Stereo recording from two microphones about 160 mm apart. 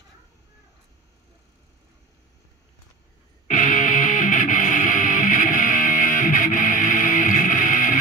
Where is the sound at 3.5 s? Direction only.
55° left (ahead or behind).